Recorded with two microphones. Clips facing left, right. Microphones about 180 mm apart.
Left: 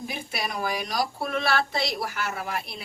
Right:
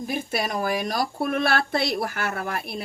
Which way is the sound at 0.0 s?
50° right (ahead or behind).